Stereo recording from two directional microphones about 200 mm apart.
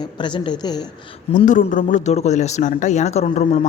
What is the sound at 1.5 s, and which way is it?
Speech, 40° left (ahead or behind).